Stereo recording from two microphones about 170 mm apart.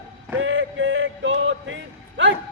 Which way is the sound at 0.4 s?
90° right.